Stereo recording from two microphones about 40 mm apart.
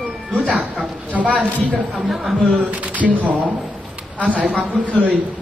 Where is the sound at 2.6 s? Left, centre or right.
Right.